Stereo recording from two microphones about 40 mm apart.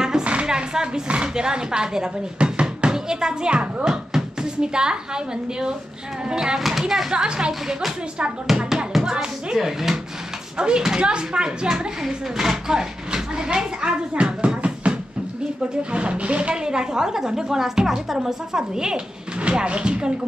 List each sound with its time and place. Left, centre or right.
0.2 s a sound: right
0.5 s a sound: centre
1.0 s a woman's voice: right
8.5 s music: centre
9.1 s a woman's voice: right
9.6 s speech: centre
10.6 s a woman's voice: right
16.6 s speech: centre
19.4 s a woman's voice: right